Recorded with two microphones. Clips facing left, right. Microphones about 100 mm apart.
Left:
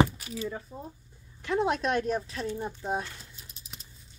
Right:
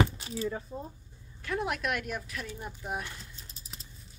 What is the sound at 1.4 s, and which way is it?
Speech, 25° left (ahead or behind).